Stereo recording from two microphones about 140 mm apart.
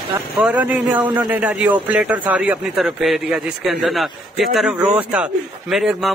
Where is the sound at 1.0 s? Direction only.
30° right (ahead or behind).